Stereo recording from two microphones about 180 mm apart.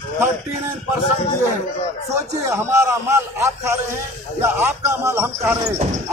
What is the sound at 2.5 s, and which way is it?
Speech, 15° right (ahead or behind).